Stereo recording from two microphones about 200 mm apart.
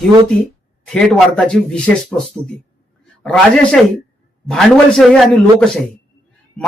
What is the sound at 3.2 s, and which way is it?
Speech, 5° left (ahead or behind).